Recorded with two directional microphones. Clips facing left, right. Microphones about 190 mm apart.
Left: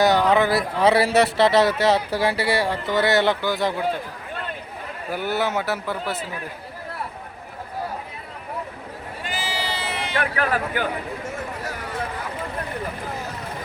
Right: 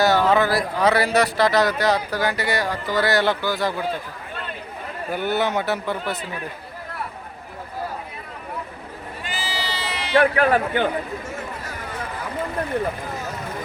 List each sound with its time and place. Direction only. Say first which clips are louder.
0.0 s speech: even; 15° left (ahead or behind)
5.1 s speech: right 1 dB; 5° left (ahead or behind)
9.2 s sheep: left 1 dB; 50° left (ahead or behind)
10.2 s a man's voice: right 7 dB; 30° right (ahead or behind)